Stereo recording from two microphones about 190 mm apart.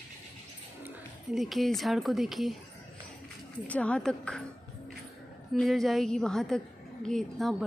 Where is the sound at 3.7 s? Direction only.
5° left (ahead or behind).